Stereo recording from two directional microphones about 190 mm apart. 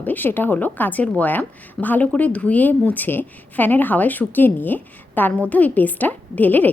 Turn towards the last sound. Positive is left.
turn(degrees=10)  # may be behind; listen again after turning